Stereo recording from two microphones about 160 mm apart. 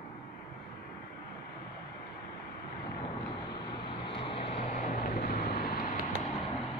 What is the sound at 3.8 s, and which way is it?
Vehicle, 35° left (ahead or behind).